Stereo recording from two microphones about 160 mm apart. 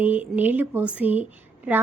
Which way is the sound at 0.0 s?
10° right (ahead or behind).